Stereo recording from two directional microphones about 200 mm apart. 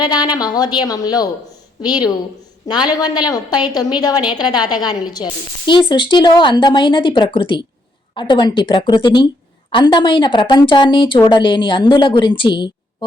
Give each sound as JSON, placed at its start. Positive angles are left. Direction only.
{"t": 0.0, "sound": "a woman's voice", "side_deg": 20}